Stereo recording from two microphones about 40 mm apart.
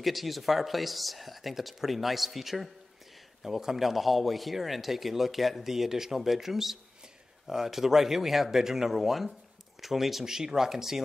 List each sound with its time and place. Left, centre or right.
0.0 s a man's voice: centre